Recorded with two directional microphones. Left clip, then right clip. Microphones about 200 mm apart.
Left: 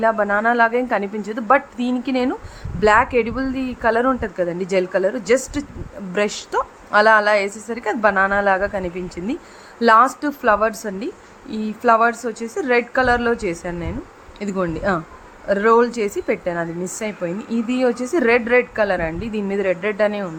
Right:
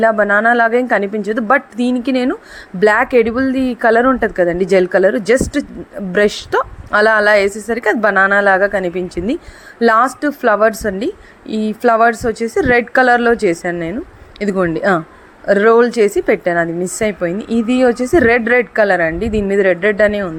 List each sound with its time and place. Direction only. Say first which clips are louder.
0.0 s a woman's voice: right 6 dB; 20° right (ahead or behind)